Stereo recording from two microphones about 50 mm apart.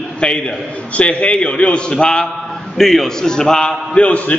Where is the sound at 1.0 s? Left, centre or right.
Left.